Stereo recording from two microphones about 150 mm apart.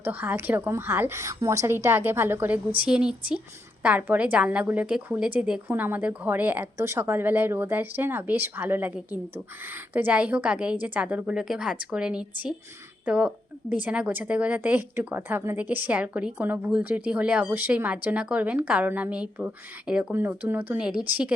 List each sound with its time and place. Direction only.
0.0 s a woman's voice: 15° right (ahead or behind)
9.9 s a woman's voice: 10° right (ahead or behind)